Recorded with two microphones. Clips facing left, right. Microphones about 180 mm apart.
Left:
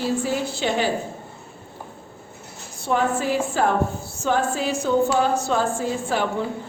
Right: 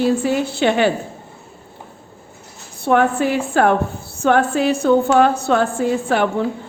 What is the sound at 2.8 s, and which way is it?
A woman's voice, 60° right (ahead or behind).